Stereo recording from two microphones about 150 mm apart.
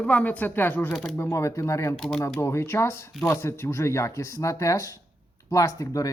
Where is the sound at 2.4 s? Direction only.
20° left (ahead or behind).